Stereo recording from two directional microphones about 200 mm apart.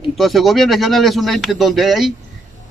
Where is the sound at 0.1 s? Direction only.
Centre (ahead or behind).